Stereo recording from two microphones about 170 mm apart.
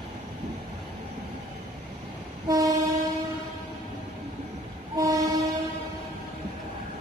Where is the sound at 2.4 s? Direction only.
20° right (ahead or behind).